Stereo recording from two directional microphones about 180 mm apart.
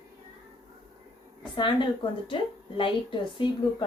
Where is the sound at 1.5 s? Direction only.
25° left (ahead or behind).